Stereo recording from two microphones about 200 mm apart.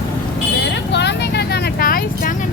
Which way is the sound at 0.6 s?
60° left (ahead or behind).